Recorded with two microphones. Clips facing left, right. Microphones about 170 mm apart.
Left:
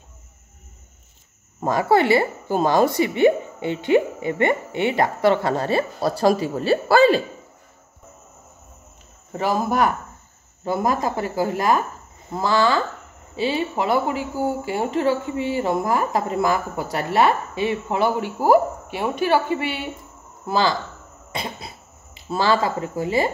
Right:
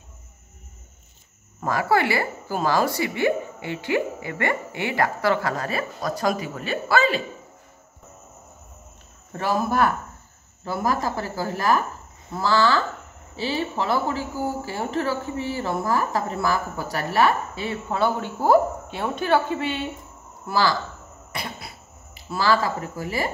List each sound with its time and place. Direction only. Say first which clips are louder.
1.6 s speech: left 4 dB; 25° left (ahead or behind)
9.3 s a man's voice: left 2 dB; 15° left (ahead or behind)
20.4 s speech: left 2 dB; 20° left (ahead or behind)